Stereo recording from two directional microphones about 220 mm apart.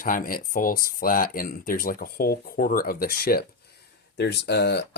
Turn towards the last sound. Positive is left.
turn(degrees=50)  # may be behind; listen again after turning